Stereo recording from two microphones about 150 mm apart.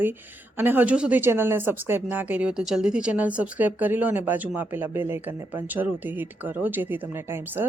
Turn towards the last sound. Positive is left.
turn(degrees=-15)  # may be behind; listen again after turning